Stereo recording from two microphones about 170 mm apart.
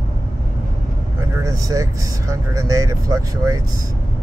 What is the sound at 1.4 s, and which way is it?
Speech, 20° right (ahead or behind).